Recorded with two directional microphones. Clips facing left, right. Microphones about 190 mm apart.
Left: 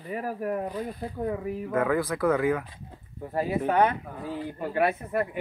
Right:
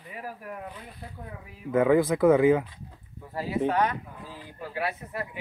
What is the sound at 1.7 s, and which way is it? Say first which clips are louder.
Speech: right 5 dB; 20° right (ahead or behind).